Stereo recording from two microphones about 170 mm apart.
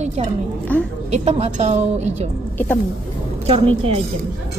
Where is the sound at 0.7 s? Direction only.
10° left (ahead or behind).